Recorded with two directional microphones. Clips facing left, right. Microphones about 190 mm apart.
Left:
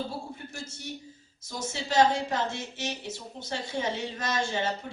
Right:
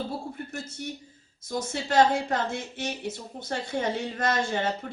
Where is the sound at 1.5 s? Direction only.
55° right (ahead or behind).